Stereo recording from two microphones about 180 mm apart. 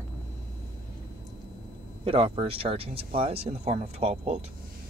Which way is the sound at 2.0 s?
30° right (ahead or behind).